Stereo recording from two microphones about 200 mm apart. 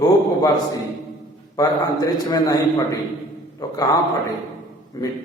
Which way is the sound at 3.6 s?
15° left (ahead or behind).